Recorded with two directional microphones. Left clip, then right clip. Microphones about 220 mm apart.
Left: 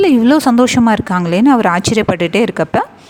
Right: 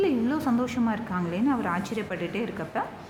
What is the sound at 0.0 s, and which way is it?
A woman's voice, 45° left (ahead or behind).